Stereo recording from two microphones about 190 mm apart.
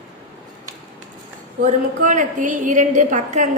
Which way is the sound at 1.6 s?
40° right (ahead or behind).